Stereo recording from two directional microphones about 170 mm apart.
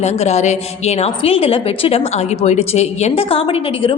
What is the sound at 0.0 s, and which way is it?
A woman's voice, 40° left (ahead or behind).